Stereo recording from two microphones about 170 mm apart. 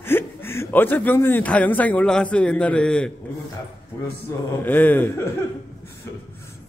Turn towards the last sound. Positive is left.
turn(degrees=10)  # may be behind; listen again after turning